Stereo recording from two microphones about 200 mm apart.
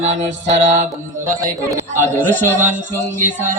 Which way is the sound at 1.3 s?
15° right (ahead or behind).